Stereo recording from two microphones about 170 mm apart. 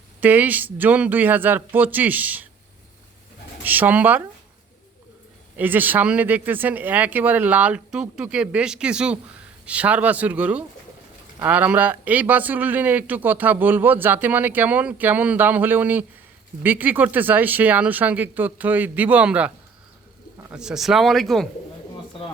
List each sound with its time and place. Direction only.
0.2 s speech: 10° right (ahead or behind)
3.6 s speech: 10° right (ahead or behind)
5.5 s speech: 10° right (ahead or behind)